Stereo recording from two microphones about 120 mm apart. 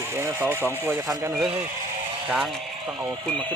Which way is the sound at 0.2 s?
20° right (ahead or behind).